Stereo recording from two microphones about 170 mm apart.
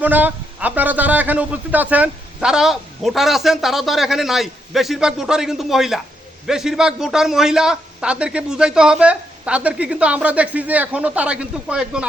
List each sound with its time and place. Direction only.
0.0 s a man's voice: 10° right (ahead or behind)